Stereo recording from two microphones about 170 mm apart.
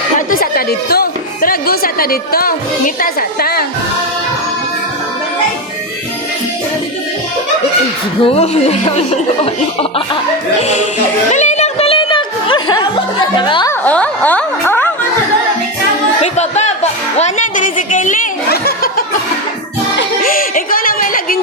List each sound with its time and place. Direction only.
0.3 s speech: 60° left (ahead or behind)
8.2 s speech: 35° left (ahead or behind)
11.3 s music: 45° left (ahead or behind); by 13.7 s 25° left (ahead or behind)
13.7 s a sound: 10° left (ahead or behind)
16.2 s music: 40° left (ahead or behind)
18.4 s laughter: 70° left (ahead or behind)
20.2 s a sound: 55° left (ahead or behind)